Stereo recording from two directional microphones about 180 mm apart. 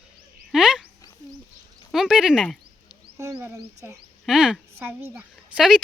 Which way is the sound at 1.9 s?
5° right (ahead or behind).